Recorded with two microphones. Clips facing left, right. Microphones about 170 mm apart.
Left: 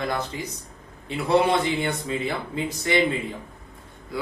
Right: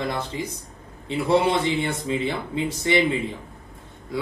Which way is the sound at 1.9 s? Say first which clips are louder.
Right 2 dB; 25° right (ahead or behind).